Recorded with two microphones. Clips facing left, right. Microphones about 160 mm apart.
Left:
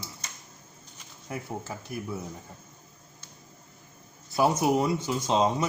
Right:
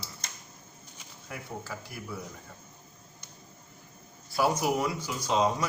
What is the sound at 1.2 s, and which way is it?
Speech, 25° left (ahead or behind).